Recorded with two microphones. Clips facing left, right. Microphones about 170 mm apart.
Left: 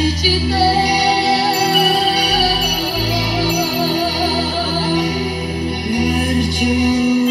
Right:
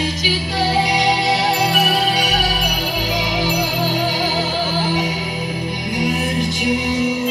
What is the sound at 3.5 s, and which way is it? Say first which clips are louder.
Music: left 3 dB; 35° left (ahead or behind).